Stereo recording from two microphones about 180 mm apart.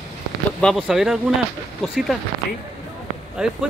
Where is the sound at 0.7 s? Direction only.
5° right (ahead or behind).